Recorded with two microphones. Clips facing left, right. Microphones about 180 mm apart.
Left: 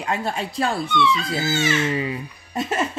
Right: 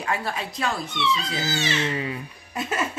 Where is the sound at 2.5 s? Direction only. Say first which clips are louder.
Left 4 dB; 25° left (ahead or behind).